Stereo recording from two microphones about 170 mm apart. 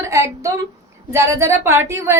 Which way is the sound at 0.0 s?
15° right (ahead or behind).